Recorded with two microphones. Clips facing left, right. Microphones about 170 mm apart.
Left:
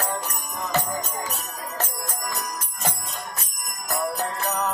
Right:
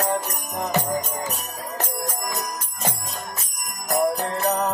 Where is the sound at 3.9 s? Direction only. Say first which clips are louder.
Right 5 dB; 30° right (ahead or behind).